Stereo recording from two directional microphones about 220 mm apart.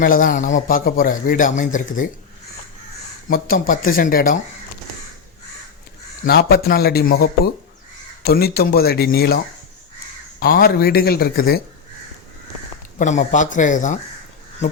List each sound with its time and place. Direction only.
0.0 s a man's voice: 40° left (ahead or behind)
3.2 s a man's voice: 40° left (ahead or behind)
6.2 s speech: 45° left (ahead or behind)
10.4 s speech: 45° left (ahead or behind)
13.0 s a man's voice: 35° left (ahead or behind)